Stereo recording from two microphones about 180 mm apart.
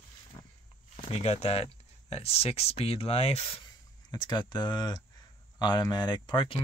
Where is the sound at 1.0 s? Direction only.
35° left (ahead or behind).